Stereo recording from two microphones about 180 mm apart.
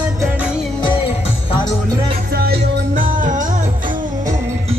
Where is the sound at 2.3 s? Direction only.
60° right (ahead or behind).